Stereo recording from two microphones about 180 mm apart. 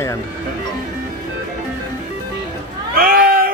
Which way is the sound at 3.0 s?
55° right (ahead or behind).